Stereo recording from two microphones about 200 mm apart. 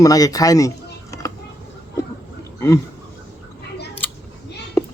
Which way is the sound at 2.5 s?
15° left (ahead or behind).